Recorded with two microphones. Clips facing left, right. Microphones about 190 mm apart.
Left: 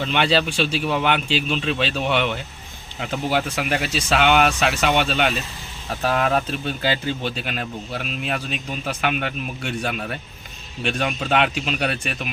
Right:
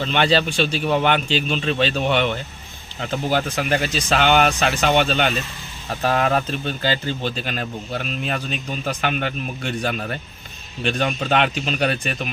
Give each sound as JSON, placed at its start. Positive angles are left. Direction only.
{"t": 0.0, "sound": "speech", "side_deg": 5}